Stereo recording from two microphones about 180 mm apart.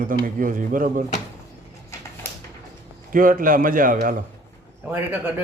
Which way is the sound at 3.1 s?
50° right (ahead or behind).